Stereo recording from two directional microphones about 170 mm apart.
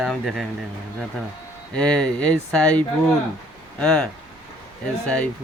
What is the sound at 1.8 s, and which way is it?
Speech, 5° left (ahead or behind).